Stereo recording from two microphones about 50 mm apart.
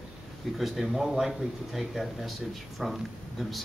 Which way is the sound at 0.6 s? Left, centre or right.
Centre.